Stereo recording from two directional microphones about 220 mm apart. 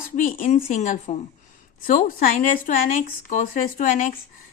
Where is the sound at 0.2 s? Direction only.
35° left (ahead or behind).